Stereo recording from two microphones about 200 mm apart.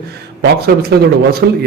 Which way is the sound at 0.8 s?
50° right (ahead or behind).